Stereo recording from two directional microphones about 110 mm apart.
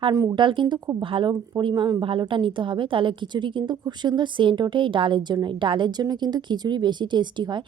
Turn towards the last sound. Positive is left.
turn(degrees=-45)  # may be behind; listen again after turning